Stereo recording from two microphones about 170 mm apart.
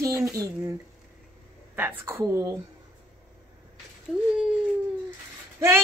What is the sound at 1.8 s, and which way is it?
Speech, 15° right (ahead or behind).